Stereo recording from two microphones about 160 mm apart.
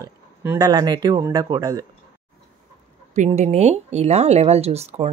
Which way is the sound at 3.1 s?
45° right (ahead or behind).